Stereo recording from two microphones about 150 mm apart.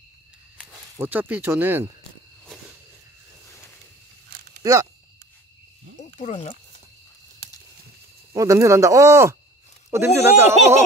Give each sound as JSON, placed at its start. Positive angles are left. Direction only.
{"t": 0.7, "sound": "speech", "side_deg": -10}
{"t": 4.6, "sound": "speech", "side_deg": -25}
{"t": 6.1, "sound": "speech", "side_deg": 50}
{"t": 8.3, "sound": "speech", "side_deg": -20}